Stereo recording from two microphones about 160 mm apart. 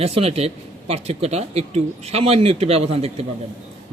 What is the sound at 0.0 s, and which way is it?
Speech, 40° right (ahead or behind).